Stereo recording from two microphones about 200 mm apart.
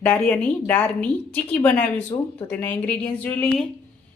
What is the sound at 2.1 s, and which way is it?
Speech, 35° left (ahead or behind).